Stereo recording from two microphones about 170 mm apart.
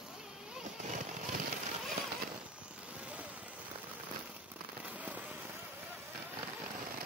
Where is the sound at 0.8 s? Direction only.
45° right (ahead or behind).